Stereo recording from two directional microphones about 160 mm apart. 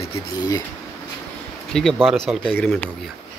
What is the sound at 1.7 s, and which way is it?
Speech, centre (ahead or behind).